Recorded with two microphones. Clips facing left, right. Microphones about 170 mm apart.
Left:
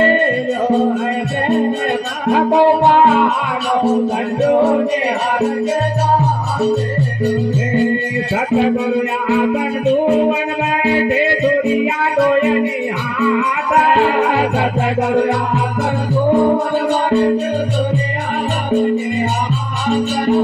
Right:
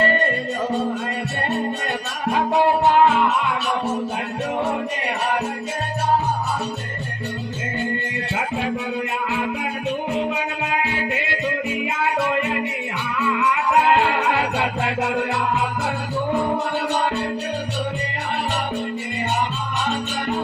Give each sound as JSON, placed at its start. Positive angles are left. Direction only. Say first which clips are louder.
{"t": 2.3, "sound": "music", "louder": "left 7 dB", "side_deg": 40}
{"t": 14.1, "sound": "music", "louder": "left 6 dB", "side_deg": 40}